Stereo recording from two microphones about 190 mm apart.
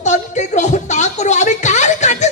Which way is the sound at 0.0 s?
40° left (ahead or behind).